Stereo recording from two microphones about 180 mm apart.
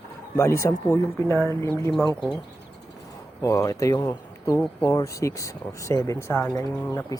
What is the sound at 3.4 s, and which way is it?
Speech, 15° left (ahead or behind).